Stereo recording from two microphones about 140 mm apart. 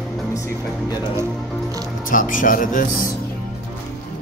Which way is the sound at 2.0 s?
75° left (ahead or behind).